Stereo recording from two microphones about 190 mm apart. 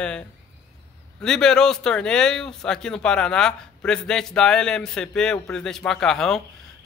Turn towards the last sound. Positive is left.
turn(degrees=5)  # may be behind; listen again after turning